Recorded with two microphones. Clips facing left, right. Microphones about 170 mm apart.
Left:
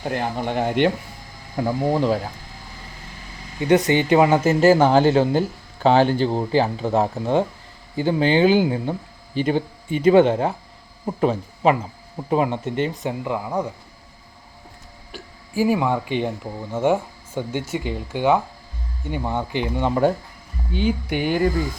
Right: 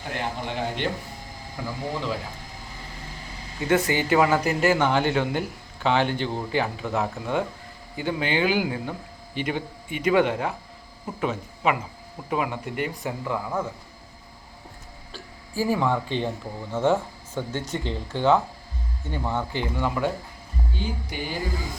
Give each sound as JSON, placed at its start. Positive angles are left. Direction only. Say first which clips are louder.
{"t": 0.4, "sound": "speech", "louder": "left 11 dB", "side_deg": 50}
{"t": 3.6, "sound": "speech", "louder": "left 5 dB", "side_deg": 20}
{"t": 15.1, "sound": "speech", "louder": "left 5 dB", "side_deg": 15}
{"t": 19.9, "sound": "speech", "louder": "left 11 dB", "side_deg": 40}
{"t": 20.7, "sound": "speech", "louder": "left 11 dB", "side_deg": 65}